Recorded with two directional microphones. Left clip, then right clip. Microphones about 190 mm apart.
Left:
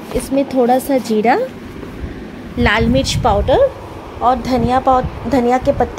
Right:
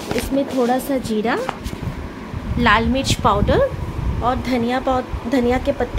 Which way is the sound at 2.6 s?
10° left (ahead or behind).